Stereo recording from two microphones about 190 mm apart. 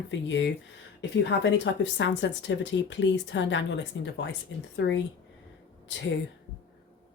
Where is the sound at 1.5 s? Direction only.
70° left (ahead or behind).